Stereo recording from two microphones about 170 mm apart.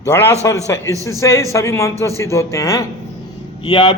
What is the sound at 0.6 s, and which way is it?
A man's voice, 20° left (ahead or behind).